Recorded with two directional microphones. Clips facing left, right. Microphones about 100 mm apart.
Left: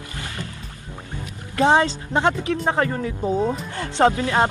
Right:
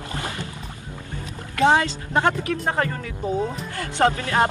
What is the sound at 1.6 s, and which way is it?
Speech, 30° left (ahead or behind).